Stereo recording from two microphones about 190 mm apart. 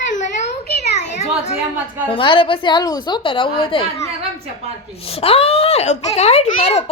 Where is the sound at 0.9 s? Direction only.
35° left (ahead or behind).